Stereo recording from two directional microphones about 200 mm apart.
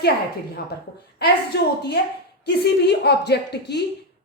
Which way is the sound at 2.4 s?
55° left (ahead or behind).